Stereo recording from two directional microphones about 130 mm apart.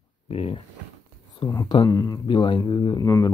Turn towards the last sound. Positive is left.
turn(degrees=30)  # may be behind; listen again after turning